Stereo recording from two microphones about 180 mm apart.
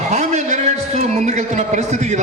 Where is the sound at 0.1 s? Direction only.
40° right (ahead or behind).